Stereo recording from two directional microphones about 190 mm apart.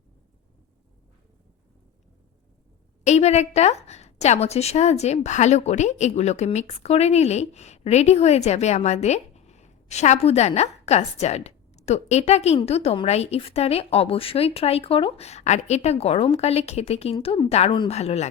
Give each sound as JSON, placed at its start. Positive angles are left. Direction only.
{"t": 3.0, "sound": "a woman's voice", "side_deg": 35}